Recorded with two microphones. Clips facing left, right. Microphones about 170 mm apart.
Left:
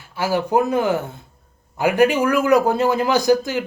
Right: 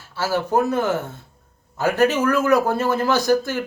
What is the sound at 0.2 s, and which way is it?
Speech, 15° left (ahead or behind).